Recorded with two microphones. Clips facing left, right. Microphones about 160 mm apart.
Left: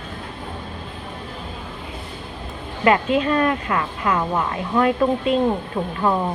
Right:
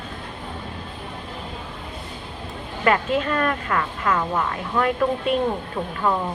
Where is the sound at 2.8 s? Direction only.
20° left (ahead or behind).